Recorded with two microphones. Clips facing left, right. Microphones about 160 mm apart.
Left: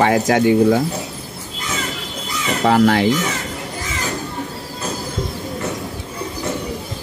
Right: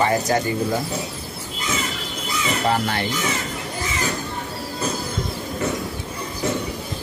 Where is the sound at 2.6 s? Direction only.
90° left.